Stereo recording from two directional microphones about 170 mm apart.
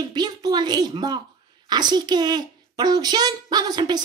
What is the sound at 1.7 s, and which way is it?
A child's voice, 25° right (ahead or behind).